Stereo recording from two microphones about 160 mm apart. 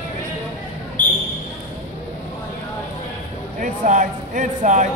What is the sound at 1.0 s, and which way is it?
Basketball bounce, 30° right (ahead or behind).